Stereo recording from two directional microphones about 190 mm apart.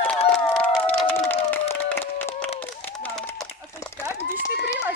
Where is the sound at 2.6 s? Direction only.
10° left (ahead or behind).